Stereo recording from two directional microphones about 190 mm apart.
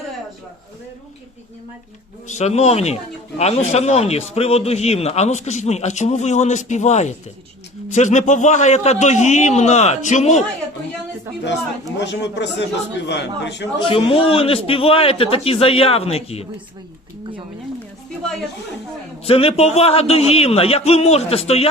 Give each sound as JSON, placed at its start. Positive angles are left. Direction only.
{"t": 2.2, "sound": "a man's voice", "side_deg": 35}
{"t": 11.9, "sound": "speech", "side_deg": 65}
{"t": 13.8, "sound": "a man's voice", "side_deg": 30}
{"t": 19.2, "sound": "a man's voice", "side_deg": 30}